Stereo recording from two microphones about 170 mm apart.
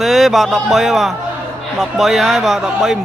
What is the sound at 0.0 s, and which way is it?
A man's voice, centre (ahead or behind).